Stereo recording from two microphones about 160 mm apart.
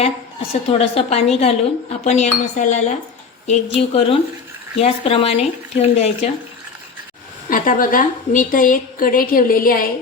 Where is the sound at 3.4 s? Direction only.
45° left (ahead or behind).